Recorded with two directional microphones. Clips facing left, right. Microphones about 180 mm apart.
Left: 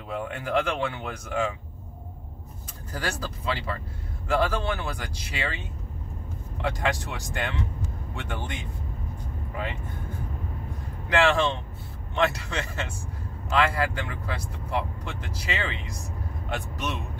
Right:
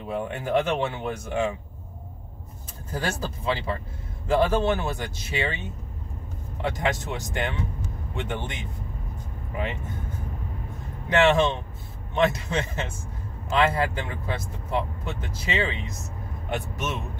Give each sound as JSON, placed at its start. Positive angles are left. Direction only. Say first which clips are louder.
{"t": 0.1, "sound": "speech", "louder": "right 2 dB", "side_deg": -25}
{"t": 2.9, "sound": "speech", "louder": "right 3 dB", "side_deg": -25}
{"t": 6.6, "sound": "speech", "louder": "right 1 dB", "side_deg": -20}
{"t": 11.1, "sound": "speech", "louder": "right 2 dB", "side_deg": -20}